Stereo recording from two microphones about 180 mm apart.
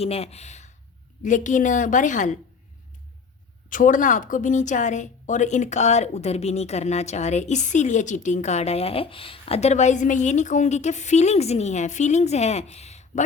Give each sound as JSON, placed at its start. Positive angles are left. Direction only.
{"t": 0.0, "sound": "a woman's voice", "side_deg": 35}
{"t": 3.7, "sound": "a woman's voice", "side_deg": 45}